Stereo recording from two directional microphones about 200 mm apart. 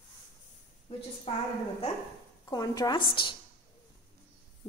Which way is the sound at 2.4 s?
20° left (ahead or behind).